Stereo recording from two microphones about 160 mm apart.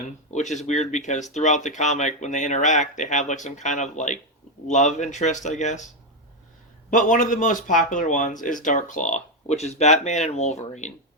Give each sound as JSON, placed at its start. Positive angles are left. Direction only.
{"t": 0.3, "sound": "speech", "side_deg": 45}
{"t": 6.9, "sound": "speech", "side_deg": 55}